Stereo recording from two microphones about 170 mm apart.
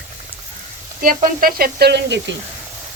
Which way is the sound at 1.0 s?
55° right (ahead or behind).